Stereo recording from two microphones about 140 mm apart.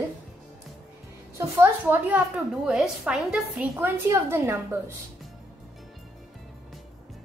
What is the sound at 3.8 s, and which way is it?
A woman's voice, 20° right (ahead or behind).